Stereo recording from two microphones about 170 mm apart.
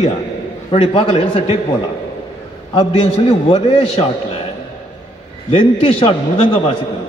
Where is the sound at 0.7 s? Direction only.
30° left (ahead or behind).